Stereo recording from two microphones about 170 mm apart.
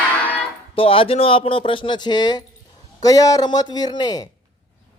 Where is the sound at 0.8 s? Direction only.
35° left (ahead or behind).